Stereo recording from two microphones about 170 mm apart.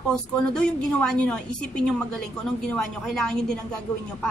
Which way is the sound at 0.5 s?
5° left (ahead or behind).